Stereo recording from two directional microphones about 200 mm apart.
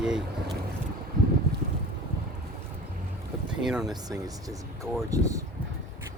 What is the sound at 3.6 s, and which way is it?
Speech, centre (ahead or behind).